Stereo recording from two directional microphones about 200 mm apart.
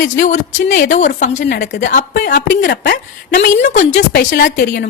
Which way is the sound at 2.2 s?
55° left (ahead or behind).